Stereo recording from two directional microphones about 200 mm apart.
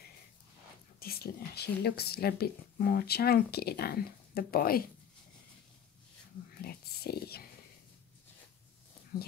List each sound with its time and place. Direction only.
0.9 s speech: 50° left (ahead or behind)
6.6 s speech: 50° left (ahead or behind)
9.1 s speech: 45° left (ahead or behind)